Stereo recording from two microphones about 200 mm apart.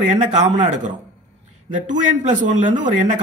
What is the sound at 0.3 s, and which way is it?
A man's voice, 35° right (ahead or behind).